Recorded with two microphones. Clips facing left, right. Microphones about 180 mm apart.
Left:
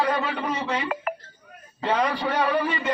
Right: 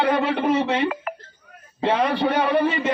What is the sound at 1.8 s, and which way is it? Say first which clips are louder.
Speech: right 4 dB; 30° right (ahead or behind).